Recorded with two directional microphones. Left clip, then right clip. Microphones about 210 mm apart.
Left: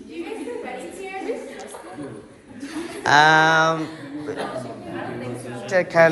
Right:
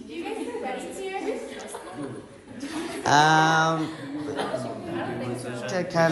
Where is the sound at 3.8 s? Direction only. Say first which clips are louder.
Left 1 dB; centre (ahead or behind).